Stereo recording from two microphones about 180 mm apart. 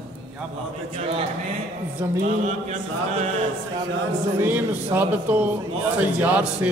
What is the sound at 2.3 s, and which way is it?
Chant, 40° right (ahead or behind).